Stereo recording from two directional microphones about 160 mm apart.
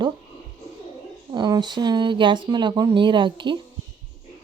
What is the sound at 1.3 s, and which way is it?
Speech, 25° right (ahead or behind).